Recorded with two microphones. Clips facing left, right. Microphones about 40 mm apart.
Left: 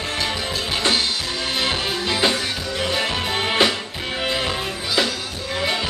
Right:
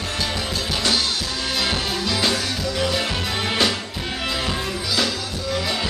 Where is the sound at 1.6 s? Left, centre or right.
Left.